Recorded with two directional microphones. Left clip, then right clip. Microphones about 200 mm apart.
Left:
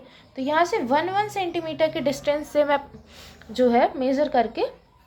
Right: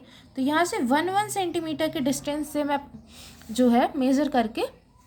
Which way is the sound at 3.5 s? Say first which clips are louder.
Left 3 dB; 30° right (ahead or behind).